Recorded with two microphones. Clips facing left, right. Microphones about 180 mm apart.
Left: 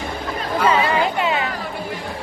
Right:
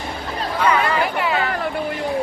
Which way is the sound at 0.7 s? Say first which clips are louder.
Left 1 dB; 25° left (ahead or behind).